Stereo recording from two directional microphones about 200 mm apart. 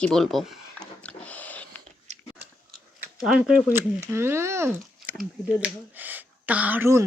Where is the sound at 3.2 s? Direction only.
5° right (ahead or behind).